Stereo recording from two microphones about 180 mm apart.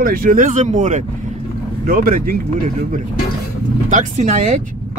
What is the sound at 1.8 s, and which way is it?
Speech, 55° right (ahead or behind).